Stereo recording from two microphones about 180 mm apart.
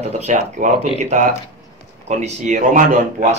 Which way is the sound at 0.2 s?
40° right (ahead or behind).